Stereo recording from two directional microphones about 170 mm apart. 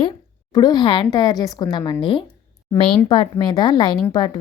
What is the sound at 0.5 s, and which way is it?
A woman's voice, 25° left (ahead or behind).